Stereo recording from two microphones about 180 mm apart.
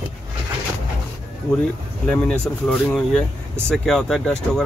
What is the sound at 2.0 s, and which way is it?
Speech, 5° left (ahead or behind).